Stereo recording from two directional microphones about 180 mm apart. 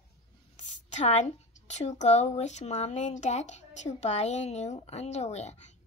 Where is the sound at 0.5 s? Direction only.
40° left (ahead or behind).